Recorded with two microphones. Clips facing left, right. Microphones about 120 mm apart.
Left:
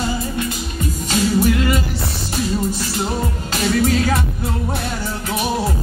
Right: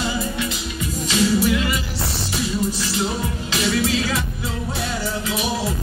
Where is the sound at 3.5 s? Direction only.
45° left (ahead or behind).